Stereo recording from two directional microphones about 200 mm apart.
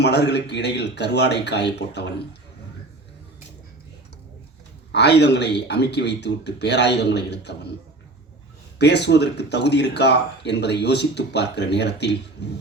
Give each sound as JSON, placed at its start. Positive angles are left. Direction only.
{"t": 0.0, "sound": "speech", "side_deg": 55}
{"t": 4.9, "sound": "speech", "side_deg": 60}
{"t": 8.8, "sound": "speech", "side_deg": 60}